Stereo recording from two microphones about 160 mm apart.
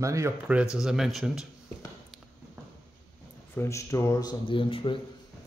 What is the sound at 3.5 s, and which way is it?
Speech, 20° left (ahead or behind).